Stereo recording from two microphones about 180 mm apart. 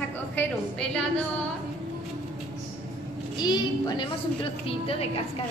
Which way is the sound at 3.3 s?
25° left (ahead or behind).